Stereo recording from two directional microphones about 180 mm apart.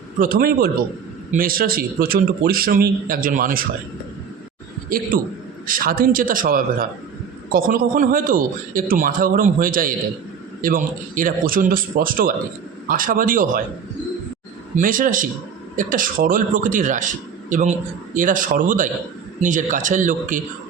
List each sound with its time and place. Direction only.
0.2 s a man's voice: 55° right (ahead or behind)
4.9 s a man's voice: 50° right (ahead or behind)
14.8 s a man's voice: 50° right (ahead or behind)